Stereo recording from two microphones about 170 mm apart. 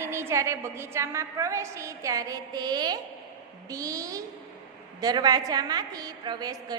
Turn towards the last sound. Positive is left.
turn(degrees=-25)  # may be behind; listen again after turning